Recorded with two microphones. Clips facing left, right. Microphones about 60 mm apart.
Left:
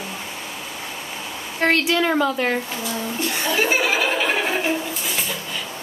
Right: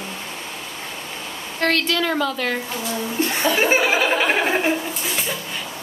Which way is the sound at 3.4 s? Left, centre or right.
Right.